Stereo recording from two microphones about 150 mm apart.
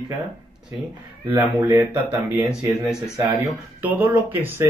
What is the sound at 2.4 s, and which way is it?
Speech, 5° right (ahead or behind).